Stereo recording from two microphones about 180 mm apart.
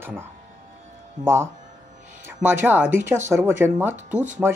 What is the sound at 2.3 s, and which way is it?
Speech, 10° right (ahead or behind).